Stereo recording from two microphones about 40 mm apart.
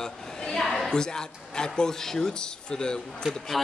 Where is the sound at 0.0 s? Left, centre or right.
Centre.